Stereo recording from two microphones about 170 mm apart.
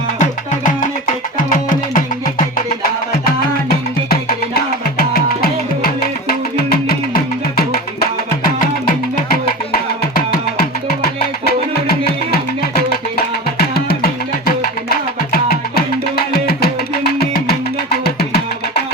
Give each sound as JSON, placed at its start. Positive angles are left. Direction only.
{"t": 0.2, "sound": "music", "side_deg": 50}
{"t": 3.7, "sound": "music", "side_deg": 60}
{"t": 12.7, "sound": "music", "side_deg": 65}